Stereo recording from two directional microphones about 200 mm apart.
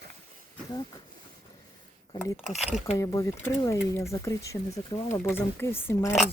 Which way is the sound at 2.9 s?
15° left (ahead or behind).